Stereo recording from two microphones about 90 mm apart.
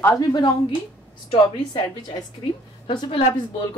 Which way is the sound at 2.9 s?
65° left (ahead or behind).